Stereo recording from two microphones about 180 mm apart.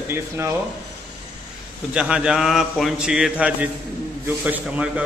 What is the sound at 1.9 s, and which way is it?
A man's voice, 5° right (ahead or behind).